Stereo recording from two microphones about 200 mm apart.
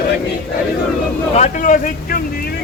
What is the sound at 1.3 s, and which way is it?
Speech, 40° left (ahead or behind).